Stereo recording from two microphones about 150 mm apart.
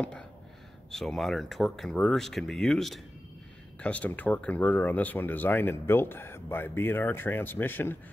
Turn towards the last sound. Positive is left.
turn(degrees=15)  # may be behind; listen again after turning